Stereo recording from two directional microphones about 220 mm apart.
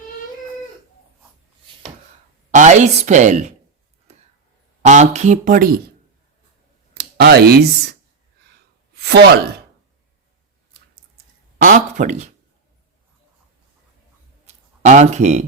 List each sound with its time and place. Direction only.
2.5 s speech: 35° right (ahead or behind)
4.8 s speech: 30° right (ahead or behind)
6.9 s speech: 45° right (ahead or behind)
9.0 s speech: 45° right (ahead or behind)
11.6 s speech: 35° right (ahead or behind)
14.4 s a sound: 30° right (ahead or behind)